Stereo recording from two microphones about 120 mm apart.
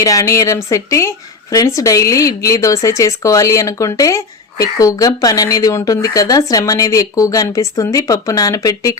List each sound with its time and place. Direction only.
0.0 s a woman's voice: 30° left (ahead or behind)